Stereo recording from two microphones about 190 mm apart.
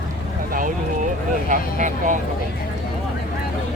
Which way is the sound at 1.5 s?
40° right (ahead or behind).